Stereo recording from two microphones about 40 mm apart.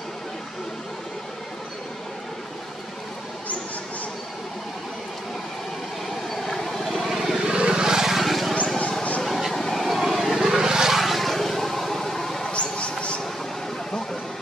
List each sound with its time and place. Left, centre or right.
6.0 s vehicle: centre
7.4 s vehicle: right; by 8.5 s centre
9.2 s a sound: centre
9.6 s vehicle: centre
9.8 s vehicle: centre
12.5 s mouse: left